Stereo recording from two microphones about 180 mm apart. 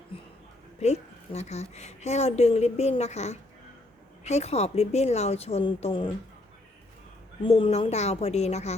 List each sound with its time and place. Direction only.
0.8 s a woman's voice: 40° left (ahead or behind)
7.4 s a woman's voice: 30° left (ahead or behind)